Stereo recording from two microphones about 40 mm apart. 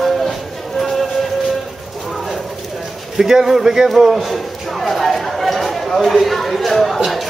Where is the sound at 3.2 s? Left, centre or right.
Centre.